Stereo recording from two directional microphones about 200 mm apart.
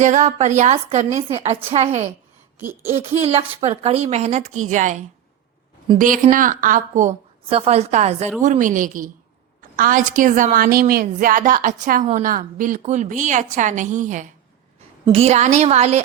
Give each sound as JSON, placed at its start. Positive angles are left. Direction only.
{"t": 0.0, "sound": "a woman's voice", "side_deg": -35}
{"t": 2.6, "sound": "a sound", "side_deg": -10}
{"t": 3.0, "sound": "a woman's voice", "side_deg": -30}
{"t": 6.0, "sound": "a woman's voice", "side_deg": -40}